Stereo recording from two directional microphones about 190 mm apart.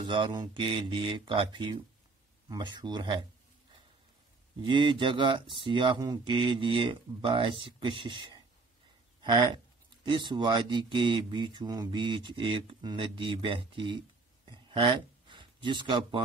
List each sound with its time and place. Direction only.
0.0 s speech: 25° right (ahead or behind)
4.6 s speech: 25° right (ahead or behind)
14.5 s a sound: 25° right (ahead or behind)